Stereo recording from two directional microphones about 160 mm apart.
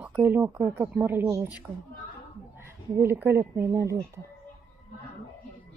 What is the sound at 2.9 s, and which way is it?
A woman's voice, 15° right (ahead or behind).